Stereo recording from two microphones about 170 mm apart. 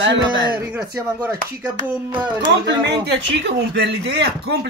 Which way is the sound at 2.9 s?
80° right.